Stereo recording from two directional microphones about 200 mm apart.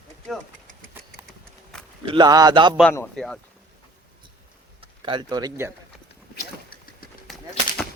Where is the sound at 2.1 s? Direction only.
20° right (ahead or behind).